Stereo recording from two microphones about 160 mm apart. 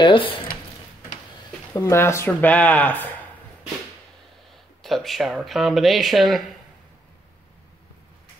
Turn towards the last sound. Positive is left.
turn(degrees=0)  # may be behind; listen again after turning